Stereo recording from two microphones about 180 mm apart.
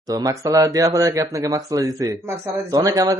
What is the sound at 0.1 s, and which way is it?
Speech, 20° right (ahead or behind).